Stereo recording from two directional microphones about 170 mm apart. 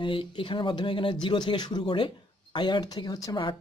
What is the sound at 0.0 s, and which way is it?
Speech, 30° left (ahead or behind).